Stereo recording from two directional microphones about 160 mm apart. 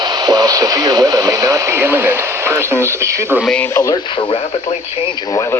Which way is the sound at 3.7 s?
20° left (ahead or behind).